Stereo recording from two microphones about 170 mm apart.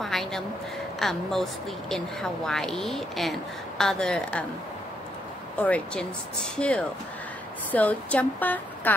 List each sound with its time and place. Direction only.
0.0 s a sound: centre (ahead or behind)
0.9 s speech: centre (ahead or behind)
5.6 s speech: 5° left (ahead or behind)